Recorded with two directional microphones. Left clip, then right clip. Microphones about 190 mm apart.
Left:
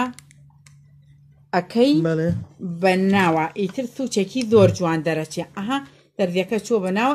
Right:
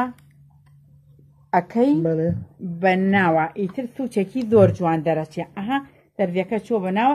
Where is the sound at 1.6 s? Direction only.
5° right (ahead or behind).